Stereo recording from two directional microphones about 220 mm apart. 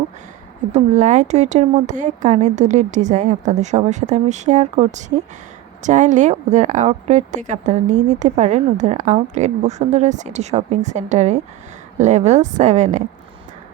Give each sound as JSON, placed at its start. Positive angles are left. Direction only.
{"t": 0.7, "sound": "speech", "side_deg": -35}